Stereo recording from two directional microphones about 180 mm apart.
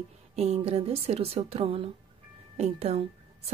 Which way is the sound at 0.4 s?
35° right (ahead or behind).